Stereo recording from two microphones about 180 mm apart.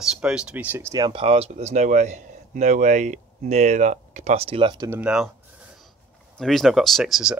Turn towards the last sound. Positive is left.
turn(degrees=-5)  # may be behind; listen again after turning